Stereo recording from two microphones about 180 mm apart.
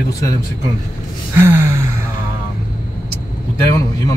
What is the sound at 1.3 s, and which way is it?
Gasp, 15° right (ahead or behind).